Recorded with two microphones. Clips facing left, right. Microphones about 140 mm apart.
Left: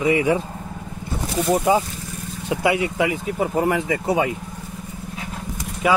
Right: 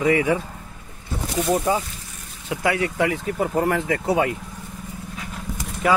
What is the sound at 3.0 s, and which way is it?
Speech, 5° left (ahead or behind).